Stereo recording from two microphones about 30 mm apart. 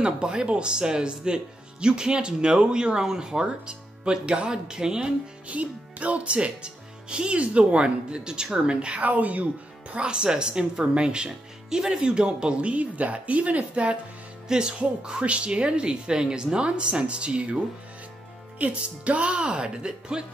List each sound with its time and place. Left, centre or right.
0.0 s speech: right
5.5 s speech: right
6.3 s speech: right
9.0 s speech: right
10.0 s speech: right
11.2 s speech: right
14.5 s speech: right
15.2 s speech: right
18.6 s speech: right